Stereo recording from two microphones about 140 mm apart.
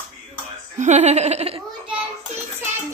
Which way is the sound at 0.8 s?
55° right (ahead or behind).